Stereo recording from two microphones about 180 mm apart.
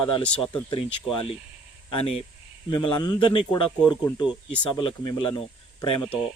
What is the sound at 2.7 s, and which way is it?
Speech, 25° left (ahead or behind).